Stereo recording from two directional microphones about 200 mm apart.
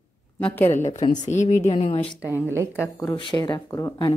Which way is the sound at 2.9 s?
20° left (ahead or behind).